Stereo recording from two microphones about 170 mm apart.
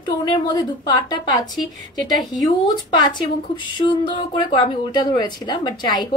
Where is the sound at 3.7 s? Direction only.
25° left (ahead or behind).